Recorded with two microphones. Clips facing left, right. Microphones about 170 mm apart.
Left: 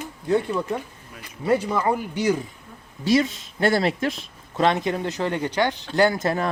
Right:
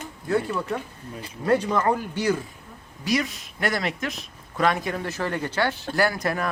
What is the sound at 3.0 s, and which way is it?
Speech, 25° left (ahead or behind).